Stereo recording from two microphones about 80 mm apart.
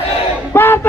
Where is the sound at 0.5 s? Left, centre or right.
Left.